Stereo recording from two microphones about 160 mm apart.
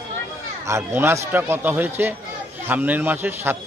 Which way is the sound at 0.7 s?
15° right (ahead or behind).